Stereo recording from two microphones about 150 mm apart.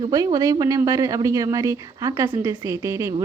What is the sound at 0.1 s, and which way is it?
A woman's voice, 25° right (ahead or behind).